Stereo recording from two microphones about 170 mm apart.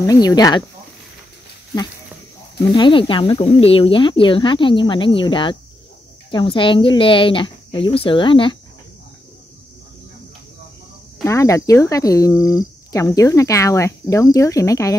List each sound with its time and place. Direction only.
0.0 s speech: 20° left (ahead or behind)
2.7 s speech: 30° left (ahead or behind)
11.2 s speech: 20° left (ahead or behind)